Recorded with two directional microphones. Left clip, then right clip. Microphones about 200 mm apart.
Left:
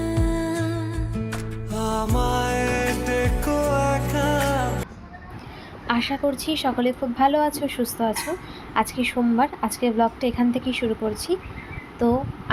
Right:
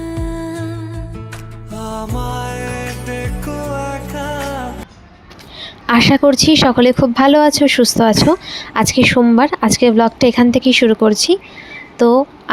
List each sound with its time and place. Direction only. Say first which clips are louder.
0.0 s music: right 1 dB; centre (ahead or behind)
5.5 s a woman's voice: right 12 dB; 55° right (ahead or behind)